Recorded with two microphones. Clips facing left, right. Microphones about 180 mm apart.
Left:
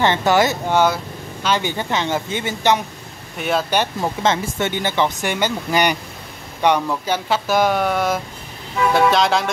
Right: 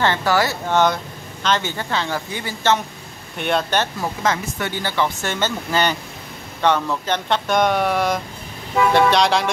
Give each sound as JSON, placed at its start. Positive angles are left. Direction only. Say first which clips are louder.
{"t": 0.0, "sound": "speech", "louder": "left 3 dB", "side_deg": 20}
{"t": 0.7, "sound": "speech", "louder": "right 1 dB", "side_deg": 10}
{"t": 3.3, "sound": "speech", "louder": "left 1 dB", "side_deg": 5}
{"t": 4.0, "sound": "speech", "louder": "left 3 dB", "side_deg": 25}